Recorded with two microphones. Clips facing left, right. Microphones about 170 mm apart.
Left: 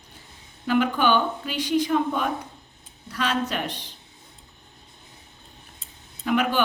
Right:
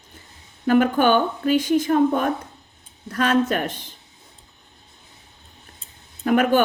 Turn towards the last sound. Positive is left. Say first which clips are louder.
# right 5 dB
turn(degrees=-50)  # may be behind; listen again after turning